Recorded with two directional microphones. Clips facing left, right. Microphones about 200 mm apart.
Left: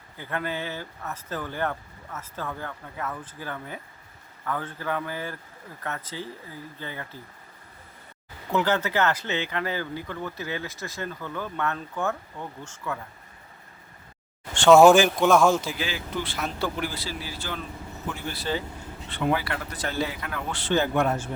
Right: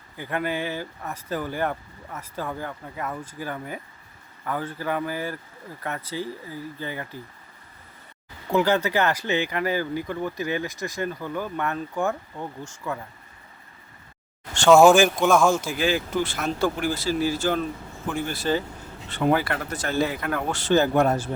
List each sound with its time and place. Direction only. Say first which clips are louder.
0.2 s speech: right 4 dB; 15° right (ahead or behind)
8.5 s speech: right 3 dB; 15° right (ahead or behind)
14.7 s speech: even; 5° left (ahead or behind)
15.2 s speech: even; 10° right (ahead or behind)
15.6 s speech: right 7 dB; 50° right (ahead or behind)